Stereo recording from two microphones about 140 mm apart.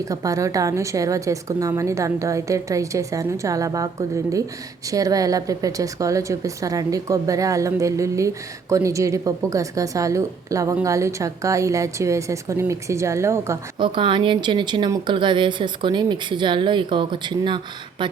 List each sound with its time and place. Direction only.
0.0 s a woman's voice: 25° right (ahead or behind)
13.7 s a woman's voice: 35° right (ahead or behind)